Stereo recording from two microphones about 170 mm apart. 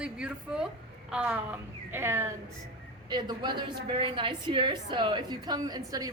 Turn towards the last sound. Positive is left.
turn(degrees=-20)  # may be behind; listen again after turning